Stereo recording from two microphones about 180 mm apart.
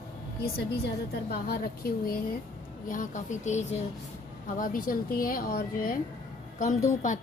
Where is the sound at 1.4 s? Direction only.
55° left (ahead or behind).